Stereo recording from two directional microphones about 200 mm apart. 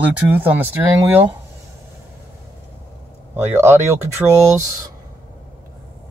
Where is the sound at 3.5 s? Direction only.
10° right (ahead or behind).